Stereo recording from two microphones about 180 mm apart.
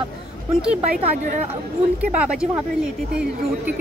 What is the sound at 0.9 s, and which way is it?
Speech, 45° right (ahead or behind).